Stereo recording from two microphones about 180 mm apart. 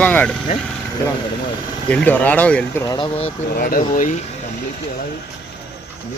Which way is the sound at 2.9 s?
30° left (ahead or behind).